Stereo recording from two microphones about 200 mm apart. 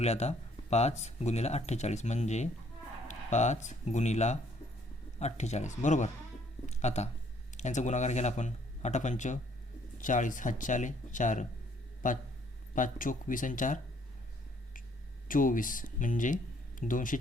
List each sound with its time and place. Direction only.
0.0 s speech: 35° left (ahead or behind)
15.3 s speech: 45° left (ahead or behind)